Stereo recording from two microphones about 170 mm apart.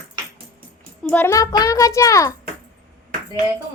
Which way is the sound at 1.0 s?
10° left (ahead or behind).